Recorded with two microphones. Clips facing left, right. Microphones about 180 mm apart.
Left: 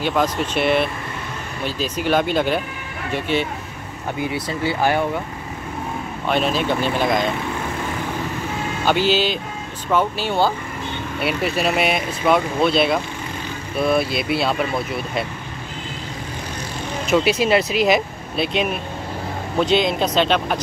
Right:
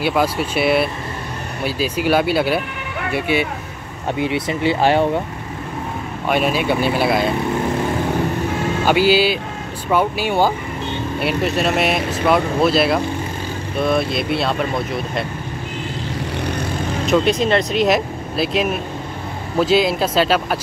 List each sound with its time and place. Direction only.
0.0 s speech: 10° right (ahead or behind)
4.2 s speech: 25° right (ahead or behind)
6.2 s speech: 10° right (ahead or behind)
8.8 s speech: 10° right (ahead or behind)
11.1 s speech: centre (ahead or behind)
17.0 s speech: 5° left (ahead or behind)